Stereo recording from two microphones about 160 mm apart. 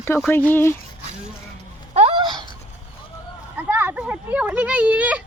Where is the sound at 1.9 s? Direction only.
40° right (ahead or behind).